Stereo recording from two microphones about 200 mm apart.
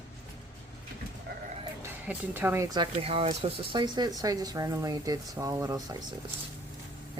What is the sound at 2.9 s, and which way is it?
Speech, 30° right (ahead or behind).